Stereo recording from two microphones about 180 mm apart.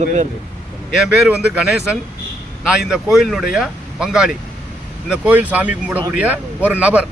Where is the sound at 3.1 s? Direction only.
Centre (ahead or behind).